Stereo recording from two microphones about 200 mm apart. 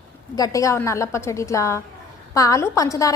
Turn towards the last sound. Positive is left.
turn(degrees=15)  # may be behind; listen again after turning